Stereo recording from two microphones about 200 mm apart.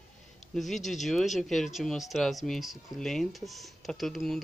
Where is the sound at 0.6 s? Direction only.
Centre (ahead or behind).